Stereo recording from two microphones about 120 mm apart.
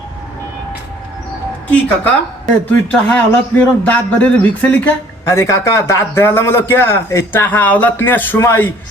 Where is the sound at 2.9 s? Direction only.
10° left (ahead or behind).